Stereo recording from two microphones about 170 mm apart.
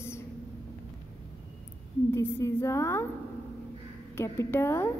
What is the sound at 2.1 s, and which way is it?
A woman's voice, 15° left (ahead or behind).